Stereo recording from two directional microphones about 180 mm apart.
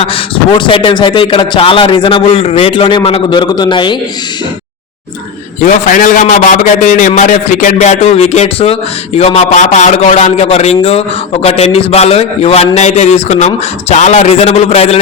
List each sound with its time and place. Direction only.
0.5 s a man's voice: 25° left (ahead or behind)
5.6 s a man's voice: 45° left (ahead or behind)